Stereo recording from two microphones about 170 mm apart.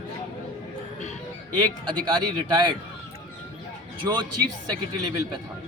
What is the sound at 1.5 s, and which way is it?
Speech, 25° right (ahead or behind).